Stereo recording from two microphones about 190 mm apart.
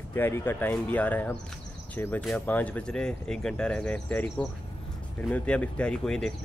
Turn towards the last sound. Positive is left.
turn(degrees=5)  # may be behind; listen again after turning